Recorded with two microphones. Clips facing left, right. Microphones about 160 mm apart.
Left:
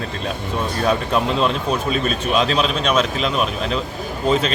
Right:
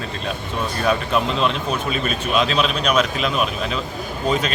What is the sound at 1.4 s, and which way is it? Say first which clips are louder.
A man's voice: left 2 dB; 35° left (ahead or behind).